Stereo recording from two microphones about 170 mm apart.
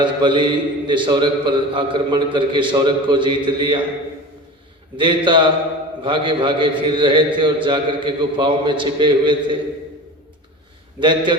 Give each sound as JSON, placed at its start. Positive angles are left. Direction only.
{"t": 0.0, "sound": "a man's voice", "side_deg": -25}
{"t": 4.9, "sound": "a man's voice", "side_deg": -30}
{"t": 11.0, "sound": "a man's voice", "side_deg": -30}